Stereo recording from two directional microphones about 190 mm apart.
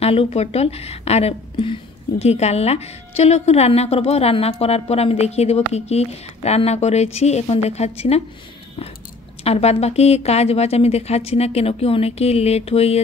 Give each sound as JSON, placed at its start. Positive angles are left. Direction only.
{"t": 0.0, "sound": "a woman's voice", "side_deg": 30}
{"t": 9.4, "sound": "a woman's voice", "side_deg": 35}